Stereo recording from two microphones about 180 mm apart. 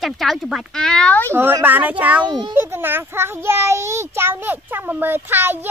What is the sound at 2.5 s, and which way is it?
A child's voice, 10° right (ahead or behind).